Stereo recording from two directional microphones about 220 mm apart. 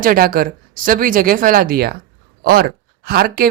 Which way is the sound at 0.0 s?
40° right (ahead or behind).